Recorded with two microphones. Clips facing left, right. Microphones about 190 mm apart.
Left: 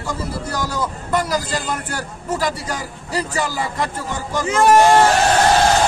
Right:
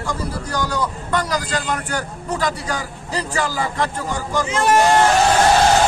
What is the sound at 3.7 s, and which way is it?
Speech, 5° left (ahead or behind).